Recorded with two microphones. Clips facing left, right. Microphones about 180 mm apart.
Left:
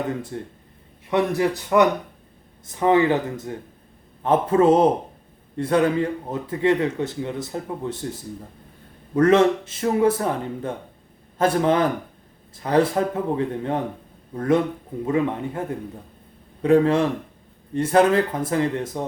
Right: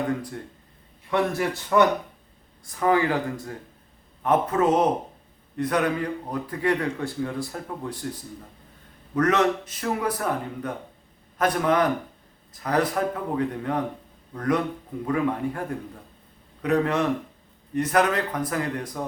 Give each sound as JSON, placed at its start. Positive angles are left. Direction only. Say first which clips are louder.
{"t": 0.3, "sound": "speech", "louder": "left 4 dB", "side_deg": 30}
{"t": 16.6, "sound": "speech", "louder": "left 5 dB", "side_deg": 30}